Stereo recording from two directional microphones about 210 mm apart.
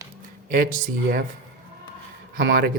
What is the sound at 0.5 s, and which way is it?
Speech, 45° right (ahead or behind).